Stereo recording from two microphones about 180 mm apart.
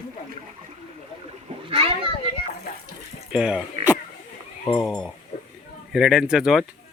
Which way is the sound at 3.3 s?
5° right (ahead or behind).